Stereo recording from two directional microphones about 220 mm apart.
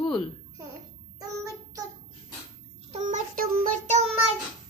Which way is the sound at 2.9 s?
35° right (ahead or behind).